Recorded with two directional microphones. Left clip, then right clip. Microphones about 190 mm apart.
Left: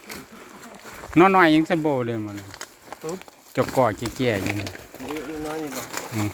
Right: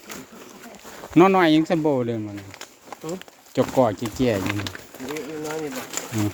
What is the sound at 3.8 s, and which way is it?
Speech, 15° right (ahead or behind).